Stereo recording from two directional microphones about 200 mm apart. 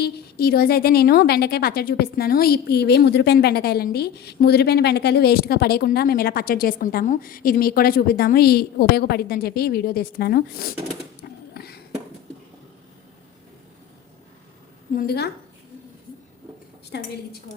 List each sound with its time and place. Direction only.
0.0 s a woman's voice: 50° left (ahead or behind)
11.2 s a sound: 50° left (ahead or behind)
14.9 s a woman's voice: 50° left (ahead or behind)
16.9 s a woman's voice: 60° left (ahead or behind)